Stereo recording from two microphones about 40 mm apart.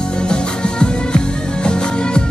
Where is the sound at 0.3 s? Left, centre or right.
Left.